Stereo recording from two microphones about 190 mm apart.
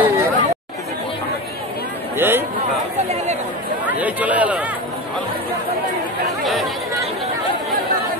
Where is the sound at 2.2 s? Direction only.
10° right (ahead or behind).